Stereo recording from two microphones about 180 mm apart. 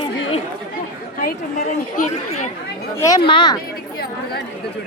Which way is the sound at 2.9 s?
20° left (ahead or behind).